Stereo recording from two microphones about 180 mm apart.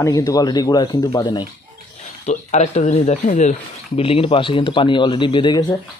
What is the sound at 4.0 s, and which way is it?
Speech, 30° left (ahead or behind).